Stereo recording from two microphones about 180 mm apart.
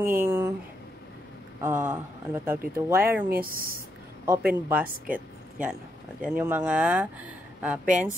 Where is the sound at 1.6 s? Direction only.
10° right (ahead or behind).